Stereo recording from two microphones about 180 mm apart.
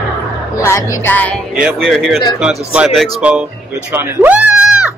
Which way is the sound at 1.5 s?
Centre (ahead or behind).